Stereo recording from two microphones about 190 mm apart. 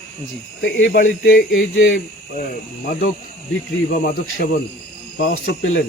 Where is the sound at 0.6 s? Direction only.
65° left (ahead or behind).